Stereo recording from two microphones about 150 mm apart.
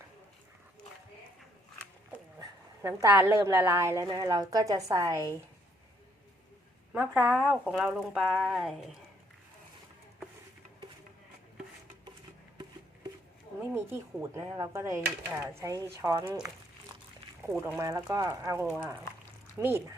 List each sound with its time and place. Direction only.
2.4 s a woman's voice: 20° right (ahead or behind)
6.9 s speech: 10° right (ahead or behind)
13.7 s a woman's voice: 15° right (ahead or behind)
17.6 s a woman's voice: 20° right (ahead or behind)
18.6 s speech: 5° right (ahead or behind)